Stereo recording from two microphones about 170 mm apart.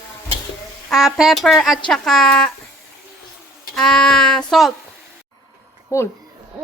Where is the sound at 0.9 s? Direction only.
Centre (ahead or behind).